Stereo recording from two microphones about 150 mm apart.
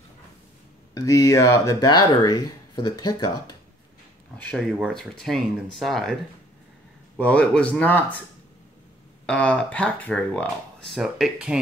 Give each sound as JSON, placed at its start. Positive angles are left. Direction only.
{"t": 0.9, "sound": "speech", "side_deg": 20}
{"t": 4.4, "sound": "speech", "side_deg": 10}
{"t": 7.2, "sound": "speech", "side_deg": 10}
{"t": 9.2, "sound": "speech", "side_deg": 5}
{"t": 10.9, "sound": "speech", "side_deg": 0}